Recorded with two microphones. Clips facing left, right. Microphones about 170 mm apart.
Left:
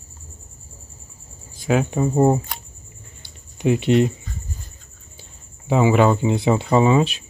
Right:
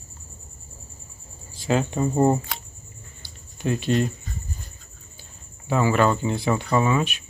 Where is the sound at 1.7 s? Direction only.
5° left (ahead or behind).